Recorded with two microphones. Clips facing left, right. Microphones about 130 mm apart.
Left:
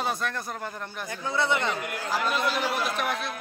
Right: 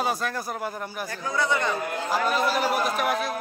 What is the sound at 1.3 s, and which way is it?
Speech, 25° left (ahead or behind).